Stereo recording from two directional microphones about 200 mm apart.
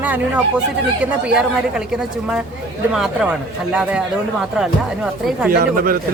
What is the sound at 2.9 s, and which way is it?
Speech, centre (ahead or behind).